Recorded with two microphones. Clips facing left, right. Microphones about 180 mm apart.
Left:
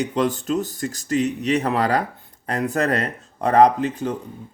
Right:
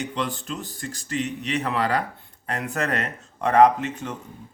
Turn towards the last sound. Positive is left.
turn(degrees=35)  # may be behind; listen again after turning